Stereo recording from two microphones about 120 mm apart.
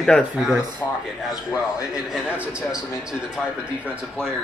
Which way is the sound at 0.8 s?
15° left (ahead or behind).